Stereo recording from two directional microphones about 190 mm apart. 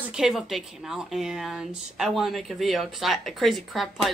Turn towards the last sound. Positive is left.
turn(degrees=0)  # may be behind; listen again after turning